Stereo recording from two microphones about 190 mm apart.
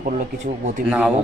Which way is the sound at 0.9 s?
5° right (ahead or behind).